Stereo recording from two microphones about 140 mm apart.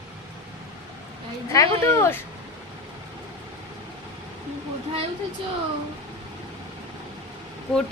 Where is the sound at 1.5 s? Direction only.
20° left (ahead or behind).